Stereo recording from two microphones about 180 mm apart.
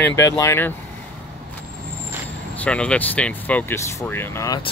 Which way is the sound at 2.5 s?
5° left (ahead or behind).